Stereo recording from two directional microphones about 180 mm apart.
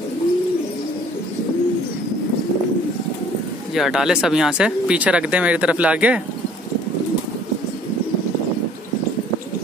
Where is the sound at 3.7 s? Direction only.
Centre (ahead or behind).